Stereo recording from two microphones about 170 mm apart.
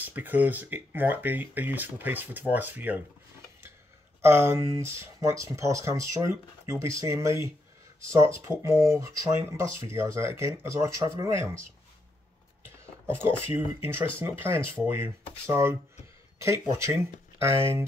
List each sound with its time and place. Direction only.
0.0 s speech: 10° right (ahead or behind)
4.2 s speech: 15° right (ahead or behind)
12.6 s a sound: 15° right (ahead or behind)
13.6 s speech: 15° right (ahead or behind)